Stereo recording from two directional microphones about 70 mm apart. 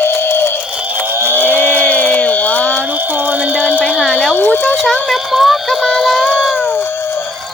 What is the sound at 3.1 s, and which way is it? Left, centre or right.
Music, right.